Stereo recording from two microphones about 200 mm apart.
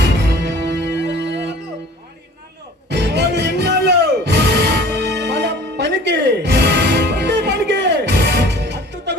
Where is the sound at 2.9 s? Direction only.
60° right (ahead or behind).